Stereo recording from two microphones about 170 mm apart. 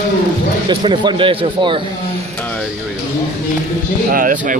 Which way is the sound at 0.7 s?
25° right (ahead or behind).